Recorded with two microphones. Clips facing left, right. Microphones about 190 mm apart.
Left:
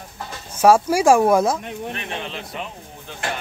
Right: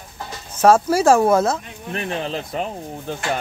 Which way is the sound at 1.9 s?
35° right (ahead or behind).